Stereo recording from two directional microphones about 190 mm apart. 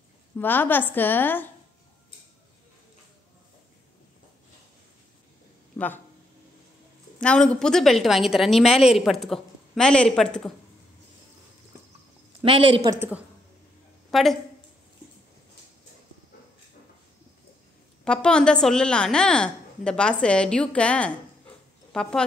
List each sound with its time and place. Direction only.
0.4 s a woman's voice: 10° left (ahead or behind)
5.7 s speech: 15° left (ahead or behind)
7.2 s a woman's voice: 5° left (ahead or behind)
12.4 s speech: 30° right (ahead or behind)
14.1 s a woman's voice: centre (ahead or behind)
18.0 s a woman's voice: 5° left (ahead or behind)